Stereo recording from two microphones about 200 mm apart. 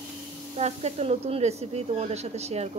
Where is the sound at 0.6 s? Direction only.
35° right (ahead or behind).